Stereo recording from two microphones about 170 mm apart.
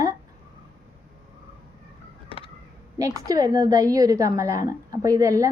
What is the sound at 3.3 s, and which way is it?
A woman's voice, 20° right (ahead or behind).